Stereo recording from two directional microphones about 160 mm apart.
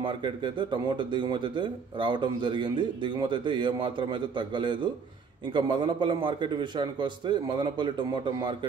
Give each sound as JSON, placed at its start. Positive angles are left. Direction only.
{"t": 0.0, "sound": "speech", "side_deg": -30}